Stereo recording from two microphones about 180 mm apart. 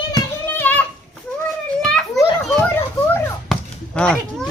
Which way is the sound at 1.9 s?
Centre (ahead or behind).